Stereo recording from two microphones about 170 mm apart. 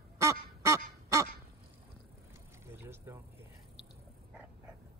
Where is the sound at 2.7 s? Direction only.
15° right (ahead or behind).